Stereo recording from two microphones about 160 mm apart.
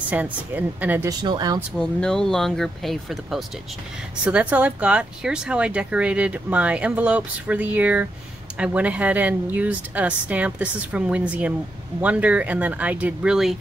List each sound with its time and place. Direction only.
0.1 s speech: 10° right (ahead or behind)
1.2 s speech: 25° right (ahead or behind)
1.8 s speech: 5° left (ahead or behind)